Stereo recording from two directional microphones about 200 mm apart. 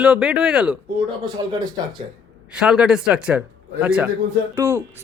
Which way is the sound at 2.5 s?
5° right (ahead or behind).